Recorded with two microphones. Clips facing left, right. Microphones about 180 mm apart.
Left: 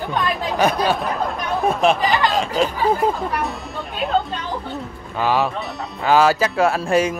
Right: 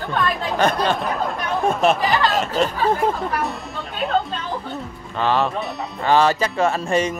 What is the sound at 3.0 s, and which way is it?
Speech, centre (ahead or behind).